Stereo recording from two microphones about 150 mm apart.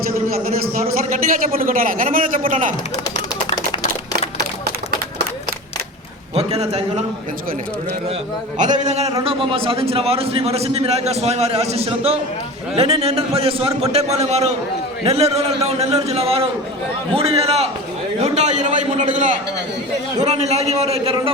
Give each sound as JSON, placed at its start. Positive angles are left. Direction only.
{"t": 0.8, "sound": "a man's voice", "side_deg": -70}
{"t": 6.3, "sound": "a man's voice", "side_deg": -45}
{"t": 8.5, "sound": "a man's voice", "side_deg": -55}
{"t": 9.2, "sound": "a man's voice", "side_deg": -35}
{"t": 20.1, "sound": "a man's voice", "side_deg": -45}